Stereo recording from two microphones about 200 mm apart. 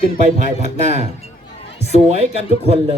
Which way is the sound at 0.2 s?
35° right (ahead or behind).